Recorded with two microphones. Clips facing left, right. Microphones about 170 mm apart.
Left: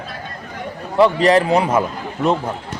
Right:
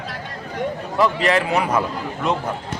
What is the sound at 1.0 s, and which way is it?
Speech, 35° left (ahead or behind).